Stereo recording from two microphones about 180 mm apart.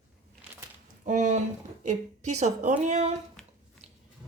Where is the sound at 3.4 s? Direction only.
5° left (ahead or behind).